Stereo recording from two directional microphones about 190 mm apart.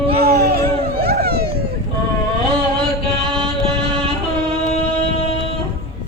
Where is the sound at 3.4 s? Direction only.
30° right (ahead or behind).